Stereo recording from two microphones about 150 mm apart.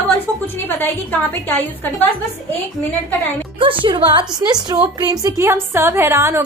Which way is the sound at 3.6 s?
35° right (ahead or behind).